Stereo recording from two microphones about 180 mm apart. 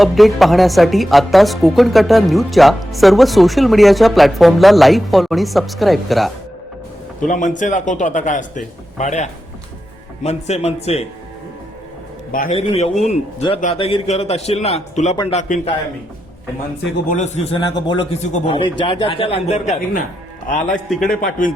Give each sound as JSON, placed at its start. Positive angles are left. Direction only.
{"t": 0.0, "sound": "a woman's voice", "side_deg": 0}
{"t": 7.3, "sound": "a man's voice", "side_deg": 45}
{"t": 12.3, "sound": "a man's voice", "side_deg": 50}
{"t": 12.5, "sound": "a man's voice", "side_deg": 35}
{"t": 15.1, "sound": "a man's voice", "side_deg": 25}
{"t": 15.4, "sound": "a man's voice", "side_deg": 40}
{"t": 17.1, "sound": "a man's voice", "side_deg": 40}
{"t": 20.7, "sound": "a woman's voice", "side_deg": 0}
{"t": 21.2, "sound": "a man's voice", "side_deg": 45}